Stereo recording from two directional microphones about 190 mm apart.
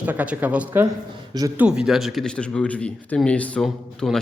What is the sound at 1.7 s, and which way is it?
A man's voice, 5° right (ahead or behind).